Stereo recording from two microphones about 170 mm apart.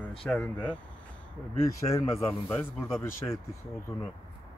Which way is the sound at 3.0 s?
15° left (ahead or behind).